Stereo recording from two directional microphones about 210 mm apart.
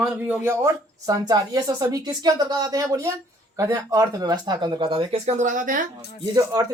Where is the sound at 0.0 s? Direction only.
5° right (ahead or behind); by 5.8 s 40° right (ahead or behind).